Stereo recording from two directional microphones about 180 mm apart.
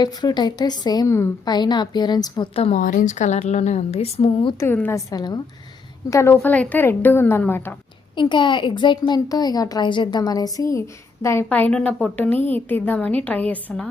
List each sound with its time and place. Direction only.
0.0 s speech: 25° left (ahead or behind)
2.8 s speech: 45° left (ahead or behind)
4.6 s a woman's voice: 10° left (ahead or behind)
8.1 s a woman's voice: 25° left (ahead or behind); by 13.8 s 10° left (ahead or behind)